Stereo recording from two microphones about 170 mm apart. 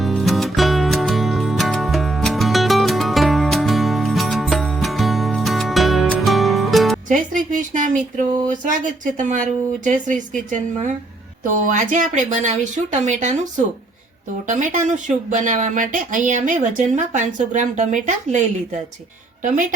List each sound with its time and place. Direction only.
0.0 s music: centre (ahead or behind)
7.1 s speech: 50° right (ahead or behind)
14.4 s speech: 50° right (ahead or behind)